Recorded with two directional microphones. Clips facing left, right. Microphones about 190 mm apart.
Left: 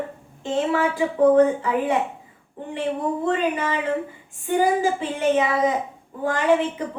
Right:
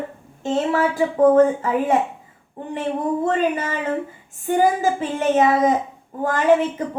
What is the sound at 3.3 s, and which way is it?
Speech, 45° right (ahead or behind).